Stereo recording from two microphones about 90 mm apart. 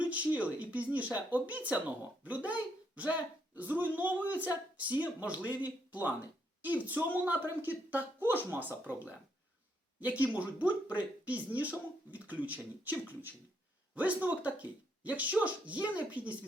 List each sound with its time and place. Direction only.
0.0 s a woman's voice: 15° right (ahead or behind)
10.0 s speech: 15° right (ahead or behind)